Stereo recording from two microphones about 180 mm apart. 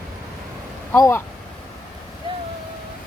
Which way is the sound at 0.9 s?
15° left (ahead or behind).